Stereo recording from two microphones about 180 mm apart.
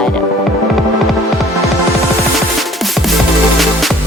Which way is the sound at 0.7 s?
Centre (ahead or behind).